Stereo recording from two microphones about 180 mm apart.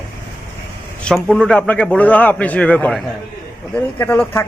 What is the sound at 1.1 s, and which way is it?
A man's voice, centre (ahead or behind).